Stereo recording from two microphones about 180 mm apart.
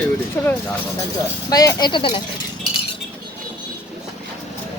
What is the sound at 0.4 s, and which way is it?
Speech, 15° left (ahead or behind).